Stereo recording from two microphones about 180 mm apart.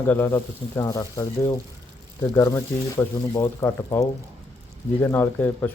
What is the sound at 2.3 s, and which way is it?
Speech, 15° left (ahead or behind).